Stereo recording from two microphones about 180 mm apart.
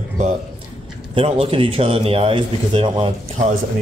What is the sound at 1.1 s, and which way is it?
Speech, 35° right (ahead or behind).